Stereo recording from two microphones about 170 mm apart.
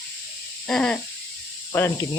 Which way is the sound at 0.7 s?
5° left (ahead or behind).